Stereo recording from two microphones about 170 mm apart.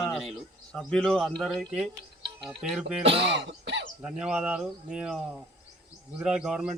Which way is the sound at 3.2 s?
90° right.